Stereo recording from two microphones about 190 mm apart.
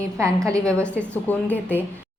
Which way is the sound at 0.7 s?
5° left (ahead or behind).